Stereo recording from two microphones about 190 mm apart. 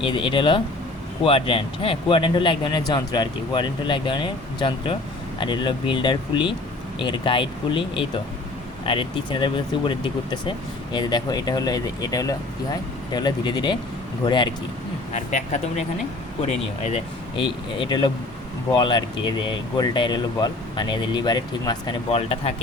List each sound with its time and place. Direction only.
0.0 s speech: 25° left (ahead or behind)
15.1 s speech: 40° left (ahead or behind)
16.8 s speech: 30° left (ahead or behind)